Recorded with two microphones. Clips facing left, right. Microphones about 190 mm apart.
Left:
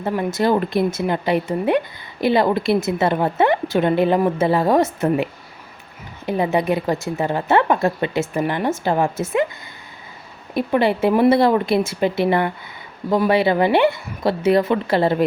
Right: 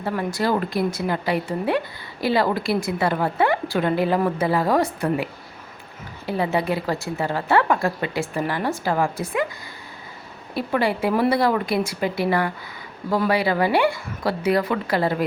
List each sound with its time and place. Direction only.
0.0 s a woman's voice: 20° left (ahead or behind)
10.5 s a woman's voice: 20° left (ahead or behind)